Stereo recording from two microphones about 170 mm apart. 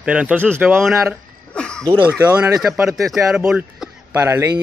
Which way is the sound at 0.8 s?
Centre (ahead or behind).